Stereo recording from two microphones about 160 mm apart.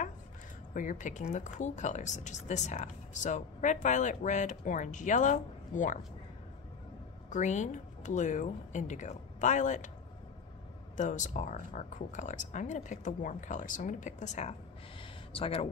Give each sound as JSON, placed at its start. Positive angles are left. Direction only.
{"t": 0.7, "sound": "speech", "side_deg": 55}
{"t": 7.2, "sound": "speech", "side_deg": 50}
{"t": 11.0, "sound": "speech", "side_deg": 50}
{"t": 15.0, "sound": "a sound", "side_deg": 35}